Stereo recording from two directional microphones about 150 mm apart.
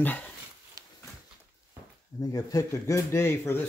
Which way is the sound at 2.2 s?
25° left (ahead or behind).